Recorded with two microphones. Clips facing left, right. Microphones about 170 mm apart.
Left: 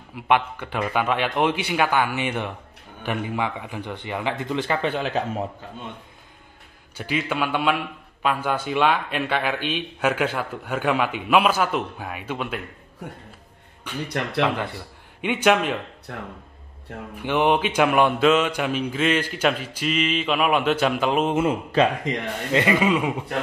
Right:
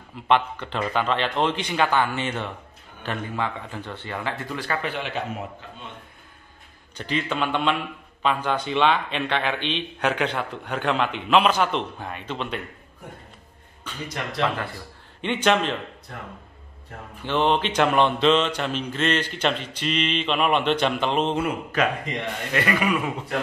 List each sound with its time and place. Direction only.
0.1 s a man's voice: 10° left (ahead or behind)
4.9 s a man's voice: 35° left (ahead or behind)
7.0 s a man's voice: 10° left (ahead or behind)
14.0 s speech: 60° left (ahead or behind)
15.2 s a man's voice: 10° left (ahead or behind)
17.2 s a man's voice: 10° left (ahead or behind)
21.4 s a man's voice: 25° left (ahead or behind)